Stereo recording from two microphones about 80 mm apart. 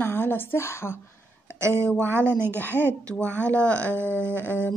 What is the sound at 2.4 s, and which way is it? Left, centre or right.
A woman's voice, left.